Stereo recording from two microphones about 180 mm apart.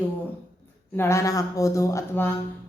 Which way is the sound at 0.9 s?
15° left (ahead or behind).